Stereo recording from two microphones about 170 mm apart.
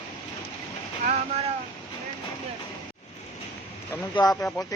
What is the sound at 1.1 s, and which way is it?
Speech, 35° right (ahead or behind).